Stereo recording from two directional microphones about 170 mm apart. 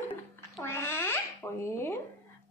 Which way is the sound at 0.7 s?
15° left (ahead or behind).